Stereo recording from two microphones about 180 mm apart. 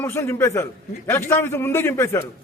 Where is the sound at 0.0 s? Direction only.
15° left (ahead or behind).